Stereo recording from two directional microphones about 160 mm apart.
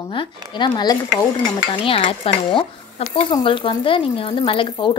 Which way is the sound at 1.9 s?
35° left (ahead or behind).